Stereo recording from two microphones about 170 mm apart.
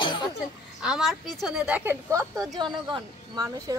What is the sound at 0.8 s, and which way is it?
A woman's voice, 5° right (ahead or behind).